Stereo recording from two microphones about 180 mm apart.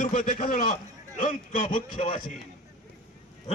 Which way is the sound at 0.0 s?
45° left (ahead or behind).